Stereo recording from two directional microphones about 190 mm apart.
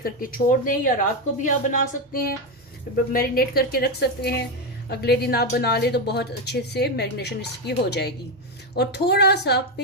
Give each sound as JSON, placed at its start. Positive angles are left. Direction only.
{"t": 0.0, "sound": "speech", "side_deg": 45}